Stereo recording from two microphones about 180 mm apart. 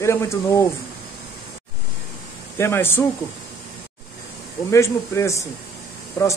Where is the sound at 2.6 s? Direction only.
15° left (ahead or behind).